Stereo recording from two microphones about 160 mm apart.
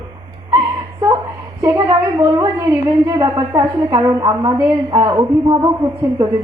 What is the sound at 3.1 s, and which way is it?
A man's voice, 25° right (ahead or behind).